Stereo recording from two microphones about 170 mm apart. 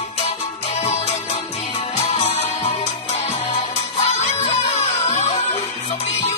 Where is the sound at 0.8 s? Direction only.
40° left (ahead or behind).